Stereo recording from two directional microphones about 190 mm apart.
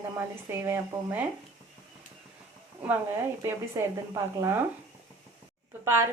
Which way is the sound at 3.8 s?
15° right (ahead or behind).